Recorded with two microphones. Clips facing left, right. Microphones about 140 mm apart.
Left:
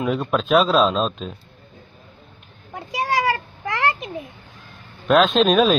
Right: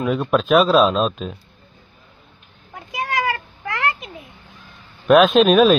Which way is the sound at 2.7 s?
30° left (ahead or behind).